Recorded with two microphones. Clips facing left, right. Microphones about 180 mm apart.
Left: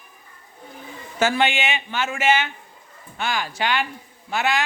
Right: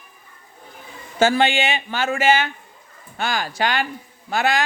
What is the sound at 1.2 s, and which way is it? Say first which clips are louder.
A man's voice: right 3 dB; 30° right (ahead or behind).